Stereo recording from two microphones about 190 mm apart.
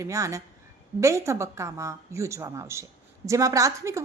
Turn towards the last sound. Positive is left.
turn(degrees=-15)  # may be behind; listen again after turning